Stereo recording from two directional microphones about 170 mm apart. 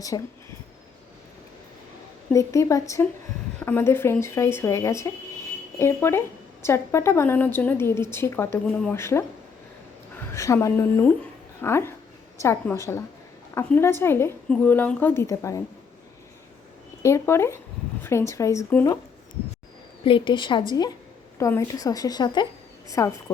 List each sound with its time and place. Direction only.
0.1 s a woman's voice: 25° left (ahead or behind)
2.3 s a woman's voice: 20° left (ahead or behind)
9.0 s a woman's voice: 15° left (ahead or behind)
10.3 s a woman's voice: 20° left (ahead or behind)
17.0 s a woman's voice: 15° left (ahead or behind)
20.1 s a woman's voice: 30° left (ahead or behind)